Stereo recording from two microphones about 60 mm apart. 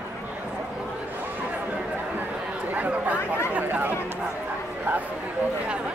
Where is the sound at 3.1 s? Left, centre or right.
Left.